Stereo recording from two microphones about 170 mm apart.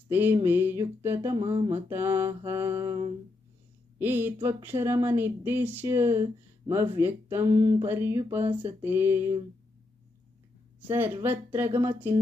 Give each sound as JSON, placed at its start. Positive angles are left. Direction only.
{"t": 0.1, "sound": "speech", "side_deg": -10}
{"t": 1.5, "sound": "mantra", "side_deg": -35}
{"t": 1.7, "sound": "speech", "side_deg": -15}
{"t": 10.8, "sound": "speech", "side_deg": -10}